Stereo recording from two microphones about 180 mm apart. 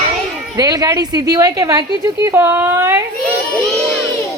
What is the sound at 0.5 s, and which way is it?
A woman's voice, 20° right (ahead or behind).